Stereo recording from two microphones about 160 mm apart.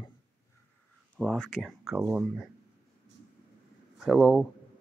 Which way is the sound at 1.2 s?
5° left (ahead or behind).